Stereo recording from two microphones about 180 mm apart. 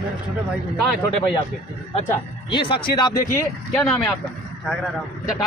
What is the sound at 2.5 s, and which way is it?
Speech, 25° left (ahead or behind).